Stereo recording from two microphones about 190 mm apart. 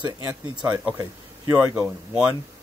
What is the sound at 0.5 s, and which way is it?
Speech, 10° right (ahead or behind).